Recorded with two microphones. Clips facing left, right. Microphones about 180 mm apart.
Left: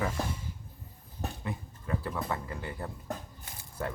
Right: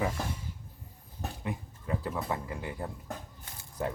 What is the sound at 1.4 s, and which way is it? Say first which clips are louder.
Speech: right 1 dB; 15° right (ahead or behind).